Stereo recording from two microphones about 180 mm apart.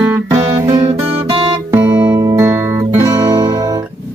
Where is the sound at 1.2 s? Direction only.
30° right (ahead or behind).